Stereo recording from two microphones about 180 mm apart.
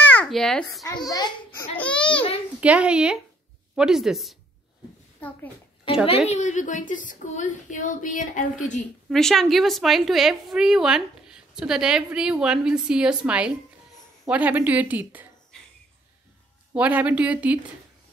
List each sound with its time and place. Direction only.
0.1 s a child's voice: 5° left (ahead or behind)
0.8 s a child's voice: 20° left (ahead or behind)
1.8 s babbling: 5° left (ahead or behind)
2.6 s a woman's voice: 5° right (ahead or behind)
6.0 s a woman's voice: 35° left (ahead or behind)
9.1 s a woman's voice: centre (ahead or behind)
16.7 s a woman's voice: 10° right (ahead or behind)